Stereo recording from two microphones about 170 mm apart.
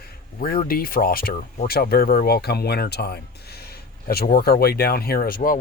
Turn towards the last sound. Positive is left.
turn(degrees=55)  # may be behind; listen again after turning